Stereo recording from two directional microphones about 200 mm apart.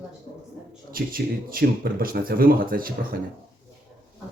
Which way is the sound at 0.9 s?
45° right (ahead or behind).